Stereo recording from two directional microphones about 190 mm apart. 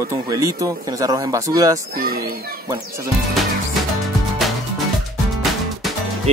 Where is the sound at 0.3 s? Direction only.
15° right (ahead or behind).